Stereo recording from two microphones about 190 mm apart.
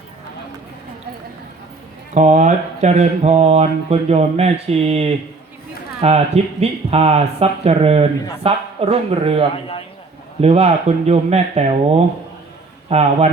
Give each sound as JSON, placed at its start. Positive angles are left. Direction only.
{"t": 2.1, "sound": "speech", "side_deg": -40}
{"t": 12.9, "sound": "speech", "side_deg": -35}